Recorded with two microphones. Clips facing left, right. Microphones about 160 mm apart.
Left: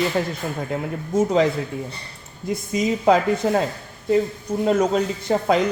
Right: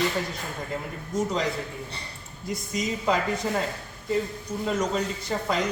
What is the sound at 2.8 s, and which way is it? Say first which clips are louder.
Speech: left 8 dB; 60° left (ahead or behind).